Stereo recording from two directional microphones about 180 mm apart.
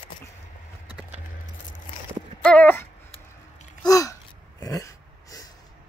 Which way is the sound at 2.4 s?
5° left (ahead or behind).